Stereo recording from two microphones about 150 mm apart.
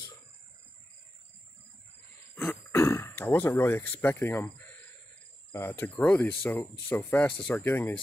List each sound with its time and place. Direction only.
2.3 s throat clearing: 15° left (ahead or behind)
5.5 s speech: 15° left (ahead or behind)